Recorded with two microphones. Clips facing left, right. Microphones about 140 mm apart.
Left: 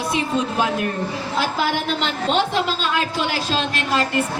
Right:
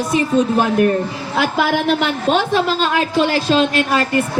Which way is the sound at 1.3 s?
60° right (ahead or behind).